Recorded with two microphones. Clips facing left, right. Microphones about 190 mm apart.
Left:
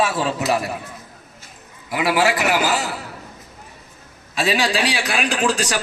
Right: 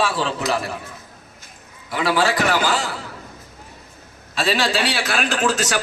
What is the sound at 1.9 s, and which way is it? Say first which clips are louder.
A man's voice: left 1 dB; 10° left (ahead or behind).